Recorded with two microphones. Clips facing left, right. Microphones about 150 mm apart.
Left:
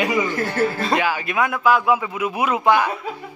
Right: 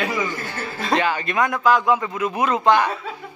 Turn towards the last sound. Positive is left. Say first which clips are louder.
# even
turn(degrees=10)  # may be behind; listen again after turning